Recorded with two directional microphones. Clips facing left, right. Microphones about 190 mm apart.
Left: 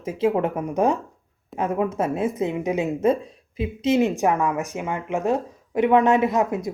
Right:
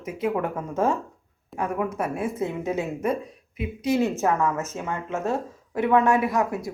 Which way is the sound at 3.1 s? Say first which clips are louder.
Left 5 dB; 30° left (ahead or behind).